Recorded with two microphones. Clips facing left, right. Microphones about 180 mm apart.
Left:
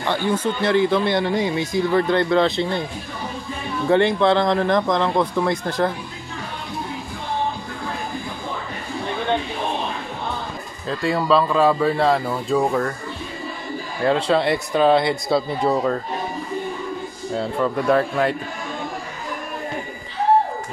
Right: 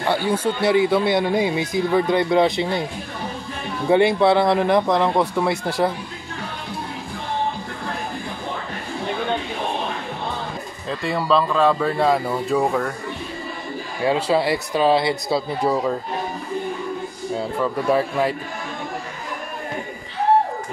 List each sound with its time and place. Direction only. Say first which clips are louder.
0.1 s speech: even; 10° right (ahead or behind)
3.9 s speech: right 1 dB; 10° right (ahead or behind)
10.9 s speech: left 2 dB; centre (ahead or behind)
14.0 s speech: left 1 dB; 5° right (ahead or behind)
17.4 s speech: left 2 dB; 5° right (ahead or behind)